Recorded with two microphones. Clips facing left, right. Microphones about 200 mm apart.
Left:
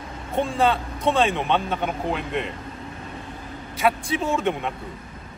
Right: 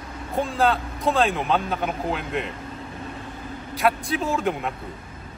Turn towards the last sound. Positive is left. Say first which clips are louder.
# left 1 dB
turn(degrees=0)  # may be behind; listen again after turning